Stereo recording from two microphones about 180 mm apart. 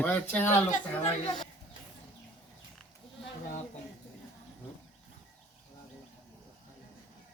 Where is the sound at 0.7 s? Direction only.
40° left (ahead or behind).